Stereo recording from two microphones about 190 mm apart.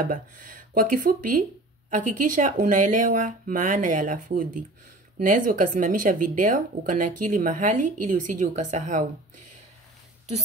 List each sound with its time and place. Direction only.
0.0 s speech: 45° right (ahead or behind)